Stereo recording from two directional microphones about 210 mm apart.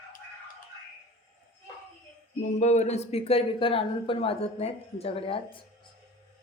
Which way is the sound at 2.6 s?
35° left (ahead or behind).